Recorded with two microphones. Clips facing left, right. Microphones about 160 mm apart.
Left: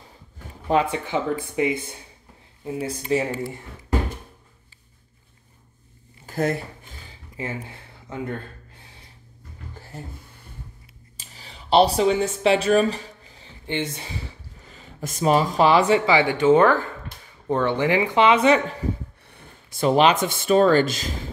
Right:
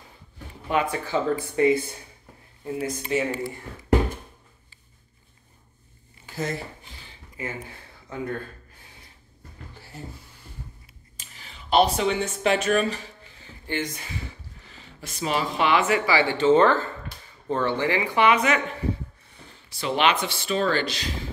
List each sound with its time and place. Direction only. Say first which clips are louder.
0.7 s speech: left 4 dB; 30° left (ahead or behind)
6.2 s speech: left 6 dB; 55° left (ahead or behind)
7.4 s speech: left 3 dB; 30° left (ahead or behind)
11.1 s a sound: left 2 dB; 35° left (ahead or behind)
13.7 s speech: left 2 dB; 25° left (ahead or behind)
14.7 s speech: left 8 dB; 45° left (ahead or behind)
16.1 s speech: left 2 dB; 15° left (ahead or behind)
19.2 s speech: left 2 dB; 55° left (ahead or behind)